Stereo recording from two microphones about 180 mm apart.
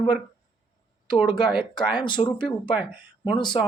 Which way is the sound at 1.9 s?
25° left (ahead or behind).